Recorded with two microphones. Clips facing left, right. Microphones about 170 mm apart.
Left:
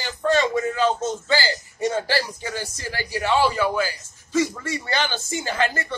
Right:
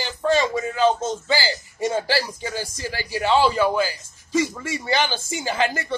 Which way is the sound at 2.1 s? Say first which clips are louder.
Right 1 dB; 10° right (ahead or behind).